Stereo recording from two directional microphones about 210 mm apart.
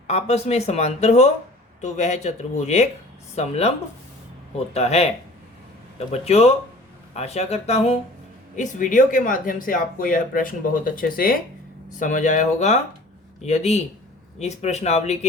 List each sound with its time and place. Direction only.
0.1 s speech: 30° left (ahead or behind)
4.7 s speech: 30° left (ahead or behind)